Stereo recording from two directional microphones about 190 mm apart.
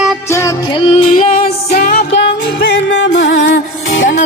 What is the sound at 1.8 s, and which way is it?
Music, 50° left (ahead or behind).